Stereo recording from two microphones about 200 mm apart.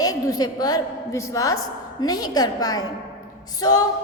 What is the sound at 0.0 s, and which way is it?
A woman's voice, 15° left (ahead or behind).